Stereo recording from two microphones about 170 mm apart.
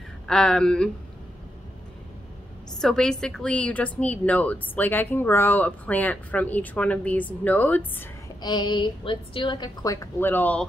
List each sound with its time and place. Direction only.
0.3 s a woman's voice: 5° left (ahead or behind)
2.8 s a woman's voice: 5° left (ahead or behind)
8.4 s a woman's voice: 25° left (ahead or behind)
10.2 s speech: 10° left (ahead or behind)